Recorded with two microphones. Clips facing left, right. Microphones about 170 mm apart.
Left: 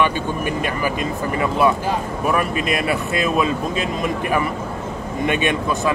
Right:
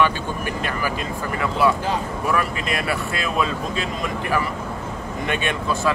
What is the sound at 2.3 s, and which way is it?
Speech, 20° left (ahead or behind).